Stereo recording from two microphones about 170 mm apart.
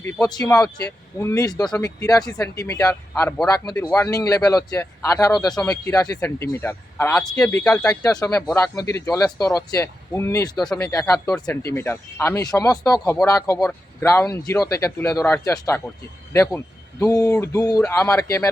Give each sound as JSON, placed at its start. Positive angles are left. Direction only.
{"t": 0.0, "sound": "speech", "side_deg": 20}
{"t": 7.9, "sound": "speech", "side_deg": 20}
{"t": 17.0, "sound": "speech", "side_deg": 20}